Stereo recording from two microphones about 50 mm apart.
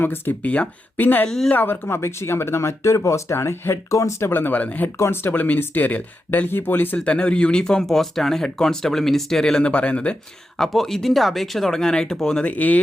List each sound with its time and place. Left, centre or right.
0.0 s speech: left
0.4 s speech: left
0.9 s speech: left
4.3 s speech: left
4.9 s speech: left
5.2 s speech: left
6.9 s speech: left
9.7 s speech: left
10.6 s speech: centre
11.7 s speech: centre
12.5 s speech: left